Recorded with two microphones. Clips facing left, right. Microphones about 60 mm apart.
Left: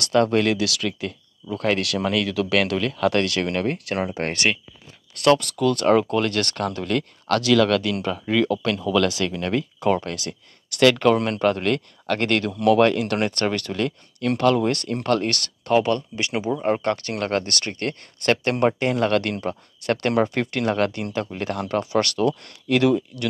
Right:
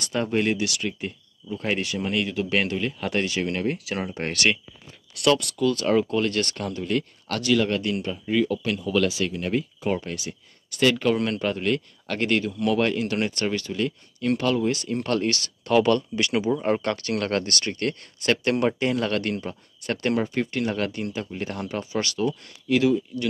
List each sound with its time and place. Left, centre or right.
0.0 s speech: left
5.2 s speech: left
11.1 s speech: left
15.7 s speech: left
22.4 s speech: left